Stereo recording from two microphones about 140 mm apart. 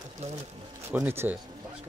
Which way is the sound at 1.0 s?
15° right (ahead or behind).